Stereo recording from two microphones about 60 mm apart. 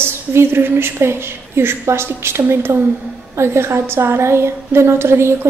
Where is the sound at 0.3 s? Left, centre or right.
Right.